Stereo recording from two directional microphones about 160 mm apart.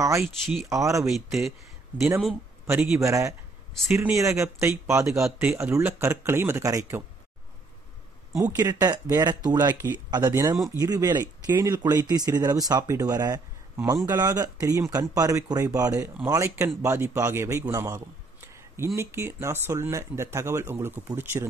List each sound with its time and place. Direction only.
0.2 s speech: centre (ahead or behind)
0.7 s speech: 20° right (ahead or behind)
1.0 s speech: centre (ahead or behind)
2.6 s speech: 15° right (ahead or behind)
8.5 s a man's voice: 20° right (ahead or behind)